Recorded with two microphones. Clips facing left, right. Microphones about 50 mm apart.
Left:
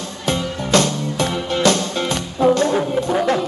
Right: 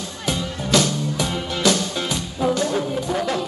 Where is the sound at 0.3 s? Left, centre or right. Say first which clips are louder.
Left 3 dB; left.